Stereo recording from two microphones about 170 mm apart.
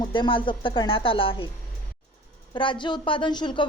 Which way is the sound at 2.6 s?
30° left (ahead or behind).